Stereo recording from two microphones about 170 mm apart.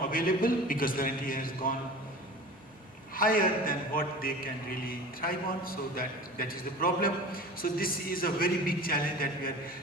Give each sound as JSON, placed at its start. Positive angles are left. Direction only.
{"t": 0.1, "sound": "a man's voice", "side_deg": 55}
{"t": 3.2, "sound": "a man's voice", "side_deg": 55}